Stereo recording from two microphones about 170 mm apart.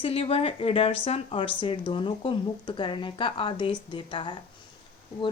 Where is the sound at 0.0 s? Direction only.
35° left (ahead or behind).